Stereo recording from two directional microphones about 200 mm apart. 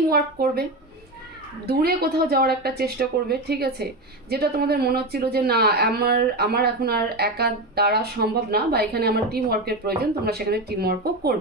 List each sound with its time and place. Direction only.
0.1 s a woman's voice: 50° right (ahead or behind)
1.7 s a woman's voice: 50° right (ahead or behind)